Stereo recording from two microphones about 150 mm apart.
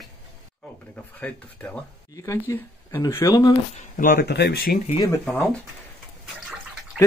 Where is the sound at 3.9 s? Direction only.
65° left (ahead or behind); by 4.8 s 90° left.